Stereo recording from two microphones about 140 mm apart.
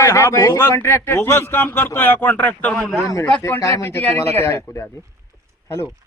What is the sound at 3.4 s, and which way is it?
Speech, 20° left (ahead or behind).